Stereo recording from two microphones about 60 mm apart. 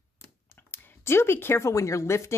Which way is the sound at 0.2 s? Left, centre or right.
Left.